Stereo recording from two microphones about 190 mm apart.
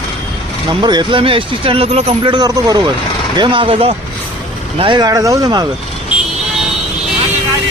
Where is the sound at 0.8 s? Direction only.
25° right (ahead or behind).